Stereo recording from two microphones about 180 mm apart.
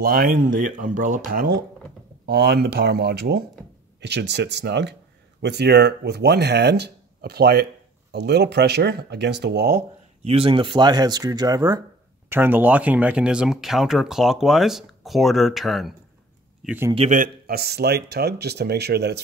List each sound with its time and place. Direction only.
0.0 s speech: 55° right (ahead or behind)
2.2 s speech: 65° right (ahead or behind)
10.2 s speech: 30° right (ahead or behind); by 15.9 s centre (ahead or behind)
16.6 s a man's voice: 10° right (ahead or behind)
16.9 s a man's voice: 35° right (ahead or behind)
17.2 s speech: 60° right (ahead or behind)